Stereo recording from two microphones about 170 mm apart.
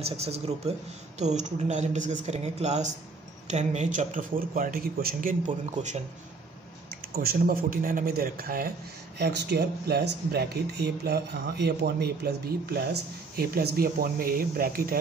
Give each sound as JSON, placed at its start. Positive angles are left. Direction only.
{"t": 0.0, "sound": "speech", "side_deg": -40}
{"t": 7.2, "sound": "speech", "side_deg": -55}
{"t": 9.2, "sound": "speech", "side_deg": -80}